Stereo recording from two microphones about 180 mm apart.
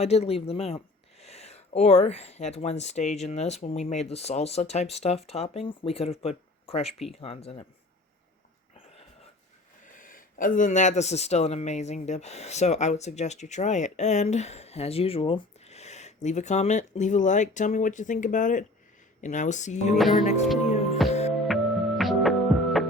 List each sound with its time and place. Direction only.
0.0 s speech: 35° left (ahead or behind)
9.8 s speech: 50° left (ahead or behind)
20.7 s music: 35° left (ahead or behind)
21.3 s music: centre (ahead or behind)